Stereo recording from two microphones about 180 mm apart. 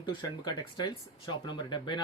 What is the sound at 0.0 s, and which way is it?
Speech, 25° left (ahead or behind).